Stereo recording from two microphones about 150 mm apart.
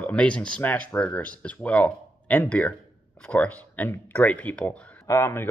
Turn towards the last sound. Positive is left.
turn(degrees=15)  # may be behind; listen again after turning